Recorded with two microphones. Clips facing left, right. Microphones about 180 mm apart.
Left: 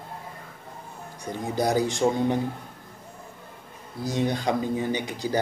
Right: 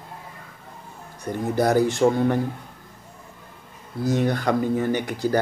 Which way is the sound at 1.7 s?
15° left (ahead or behind).